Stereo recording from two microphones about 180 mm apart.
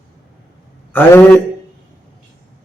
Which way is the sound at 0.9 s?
10° left (ahead or behind).